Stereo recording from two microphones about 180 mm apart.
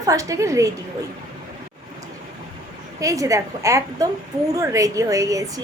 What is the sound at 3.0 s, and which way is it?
A woman's voice, 20° right (ahead or behind).